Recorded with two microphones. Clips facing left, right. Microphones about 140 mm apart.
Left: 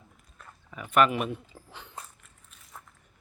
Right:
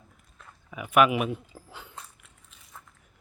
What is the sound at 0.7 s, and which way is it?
Speech, 10° right (ahead or behind).